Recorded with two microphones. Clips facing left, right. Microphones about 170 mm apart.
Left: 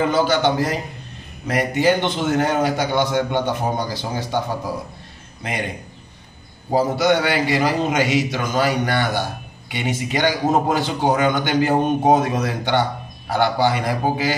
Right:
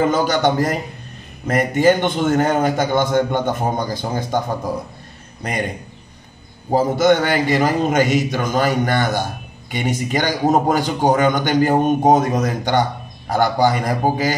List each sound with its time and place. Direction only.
0.0 s a man's voice: 45° right (ahead or behind)
6.7 s a man's voice: 45° right (ahead or behind)